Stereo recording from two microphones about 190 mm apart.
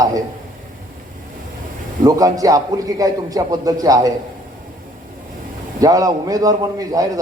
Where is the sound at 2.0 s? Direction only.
20° right (ahead or behind).